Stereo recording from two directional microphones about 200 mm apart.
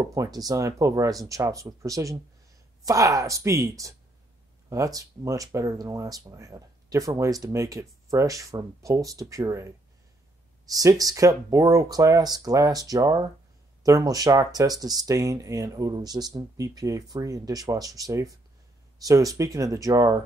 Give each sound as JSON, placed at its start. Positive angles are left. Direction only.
{"t": 0.0, "sound": "speech", "side_deg": -15}